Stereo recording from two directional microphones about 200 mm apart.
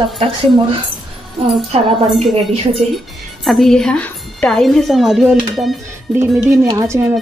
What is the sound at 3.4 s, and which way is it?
A woman's voice, centre (ahead or behind).